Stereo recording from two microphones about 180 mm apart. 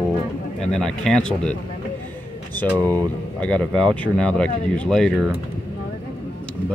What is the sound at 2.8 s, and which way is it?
Speech, 20° right (ahead or behind).